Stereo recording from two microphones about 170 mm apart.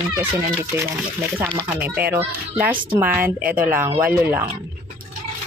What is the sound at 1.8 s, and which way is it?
Speech, 10° right (ahead or behind).